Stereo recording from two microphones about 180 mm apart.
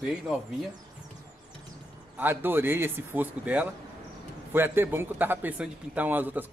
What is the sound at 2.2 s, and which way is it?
A man's voice, 10° right (ahead or behind).